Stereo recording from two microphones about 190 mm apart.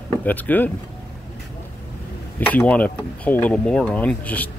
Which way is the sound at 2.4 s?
10° left (ahead or behind).